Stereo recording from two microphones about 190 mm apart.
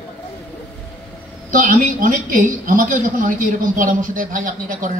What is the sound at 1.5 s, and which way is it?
A woman's voice, 45° right (ahead or behind).